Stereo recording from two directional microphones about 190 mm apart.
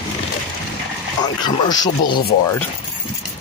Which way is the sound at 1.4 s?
20° left (ahead or behind).